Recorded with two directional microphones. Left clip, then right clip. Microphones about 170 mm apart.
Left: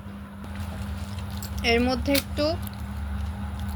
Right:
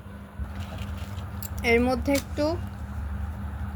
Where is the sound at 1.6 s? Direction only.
20° right (ahead or behind).